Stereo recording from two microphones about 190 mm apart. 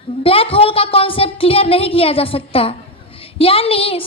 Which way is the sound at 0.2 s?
30° left (ahead or behind).